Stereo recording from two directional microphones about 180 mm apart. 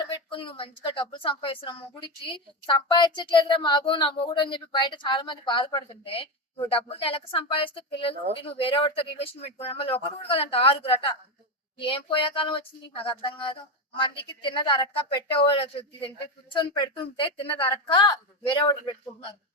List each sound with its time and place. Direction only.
0.3 s speech: 30° left (ahead or behind)